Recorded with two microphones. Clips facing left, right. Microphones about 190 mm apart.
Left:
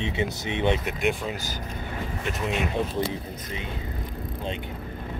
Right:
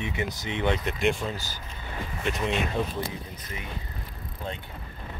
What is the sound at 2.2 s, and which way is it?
Speech, centre (ahead or behind).